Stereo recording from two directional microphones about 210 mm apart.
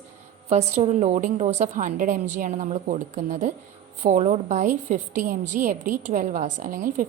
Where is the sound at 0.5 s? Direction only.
30° right (ahead or behind).